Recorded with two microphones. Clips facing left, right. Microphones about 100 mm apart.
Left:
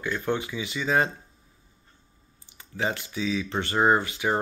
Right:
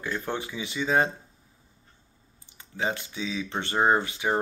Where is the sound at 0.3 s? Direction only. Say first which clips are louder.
Left 4 dB; 30° right (ahead or behind).